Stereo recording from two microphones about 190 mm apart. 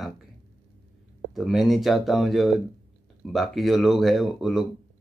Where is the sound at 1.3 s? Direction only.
Centre (ahead or behind).